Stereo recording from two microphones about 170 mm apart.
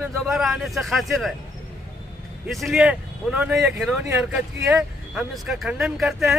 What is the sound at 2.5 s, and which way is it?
Speech, centre (ahead or behind).